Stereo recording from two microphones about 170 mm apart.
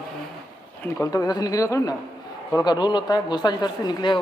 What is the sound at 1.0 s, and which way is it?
Speech, 20° left (ahead or behind).